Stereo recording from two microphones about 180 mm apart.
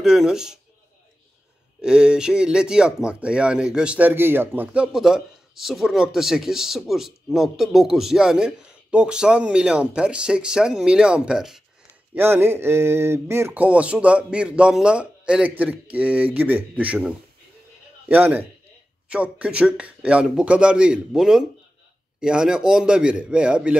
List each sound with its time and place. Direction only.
0.0 s speech: 5° right (ahead or behind)
1.8 s speech: 5° right (ahead or behind)
12.2 s speech: 15° right (ahead or behind)